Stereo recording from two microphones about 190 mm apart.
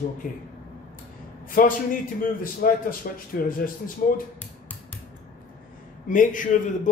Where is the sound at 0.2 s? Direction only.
45° left (ahead or behind).